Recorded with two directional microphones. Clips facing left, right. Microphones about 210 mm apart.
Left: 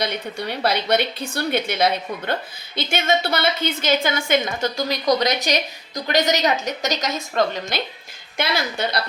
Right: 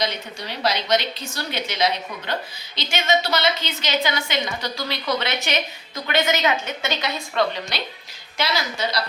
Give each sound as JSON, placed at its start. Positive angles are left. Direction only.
{"t": 0.0, "sound": "a woman's voice", "side_deg": 55}
{"t": 8.4, "sound": "a woman's voice", "side_deg": 55}